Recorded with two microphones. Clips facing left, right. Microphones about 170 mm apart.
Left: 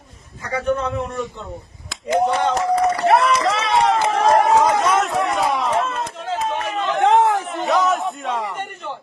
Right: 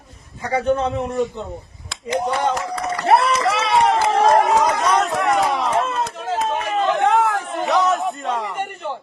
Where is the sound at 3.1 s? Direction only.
35° right (ahead or behind).